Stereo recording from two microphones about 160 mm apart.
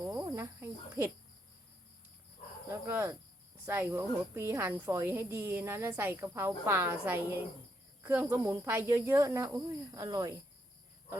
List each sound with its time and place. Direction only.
0.0 s cricket: 15° right (ahead or behind)
2.6 s cricket: 15° right (ahead or behind)
3.7 s speech: 15° right (ahead or behind)